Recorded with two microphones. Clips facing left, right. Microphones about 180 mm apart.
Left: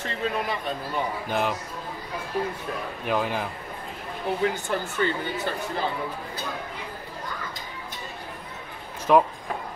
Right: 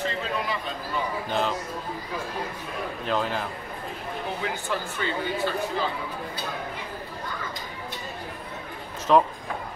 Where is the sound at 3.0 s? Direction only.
10° left (ahead or behind).